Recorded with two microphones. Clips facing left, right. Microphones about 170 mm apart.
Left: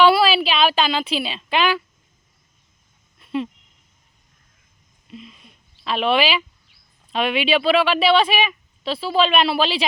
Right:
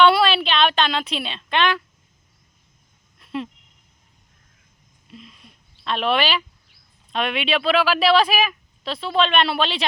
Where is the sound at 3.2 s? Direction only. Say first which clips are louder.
Left 4 dB; centre (ahead or behind).